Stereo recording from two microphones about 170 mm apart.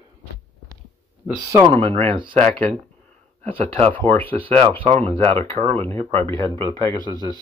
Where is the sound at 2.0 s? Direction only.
30° right (ahead or behind).